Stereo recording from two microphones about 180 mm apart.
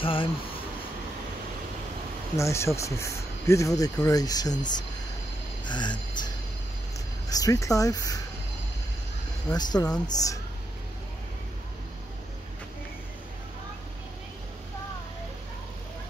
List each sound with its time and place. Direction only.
0.0 s speech: 30° left (ahead or behind)
2.3 s speech: 15° left (ahead or behind)
5.7 s a sound: 25° left (ahead or behind)
7.2 s speech: 20° left (ahead or behind)
9.5 s speech: 20° left (ahead or behind)